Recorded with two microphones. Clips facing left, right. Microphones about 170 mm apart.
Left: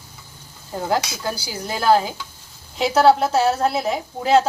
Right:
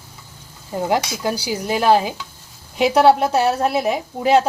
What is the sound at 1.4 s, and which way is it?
A woman's voice, 15° right (ahead or behind).